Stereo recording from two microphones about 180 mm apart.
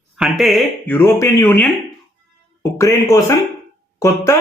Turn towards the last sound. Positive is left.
turn(degrees=20)  # may be behind; listen again after turning